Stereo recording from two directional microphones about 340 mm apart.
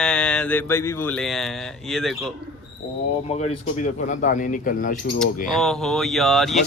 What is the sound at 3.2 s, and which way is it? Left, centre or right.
Speech, centre.